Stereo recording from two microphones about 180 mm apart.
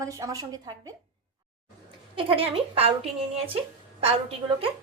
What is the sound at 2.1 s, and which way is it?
A woman's voice, 30° right (ahead or behind).